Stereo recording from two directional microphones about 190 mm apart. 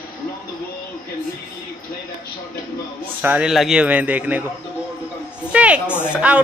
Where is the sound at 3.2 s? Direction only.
5° right (ahead or behind).